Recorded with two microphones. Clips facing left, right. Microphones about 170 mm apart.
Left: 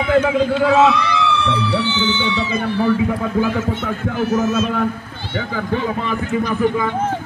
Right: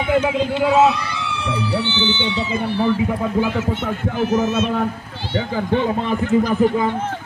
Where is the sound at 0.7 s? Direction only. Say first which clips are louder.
Right 1 dB; 90° left.